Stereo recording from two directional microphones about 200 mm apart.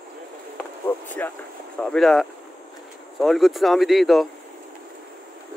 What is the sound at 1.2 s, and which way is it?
Speech, 10° left (ahead or behind).